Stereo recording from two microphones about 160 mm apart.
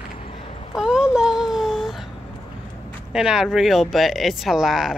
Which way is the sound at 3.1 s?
5° right (ahead or behind).